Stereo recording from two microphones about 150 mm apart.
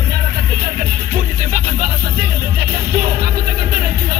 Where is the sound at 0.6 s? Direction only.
75° right (ahead or behind).